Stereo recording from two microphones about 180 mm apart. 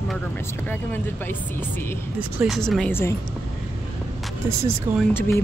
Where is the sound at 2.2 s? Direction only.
5° right (ahead or behind).